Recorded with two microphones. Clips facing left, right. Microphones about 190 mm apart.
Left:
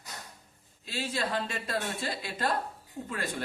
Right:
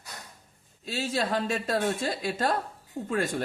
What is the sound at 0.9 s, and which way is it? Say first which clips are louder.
A man's voice: right 4 dB; 45° right (ahead or behind).